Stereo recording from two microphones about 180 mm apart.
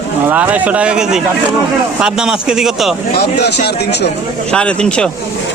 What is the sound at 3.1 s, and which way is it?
Speech, 65° left (ahead or behind).